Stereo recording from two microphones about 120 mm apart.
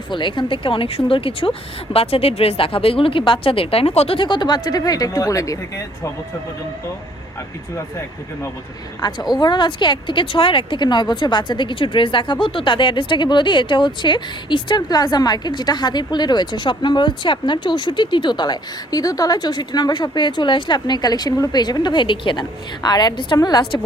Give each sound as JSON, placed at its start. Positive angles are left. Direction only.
{"t": 0.1, "sound": "speech", "side_deg": 40}
{"t": 7.8, "sound": "speech", "side_deg": 25}
{"t": 9.0, "sound": "speech", "side_deg": 35}